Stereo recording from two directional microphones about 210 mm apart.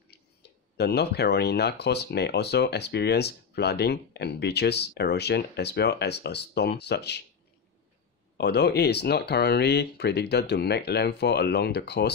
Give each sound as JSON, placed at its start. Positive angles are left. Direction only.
{"t": 0.1, "sound": "speech", "side_deg": 50}
{"t": 8.4, "sound": "speech", "side_deg": 50}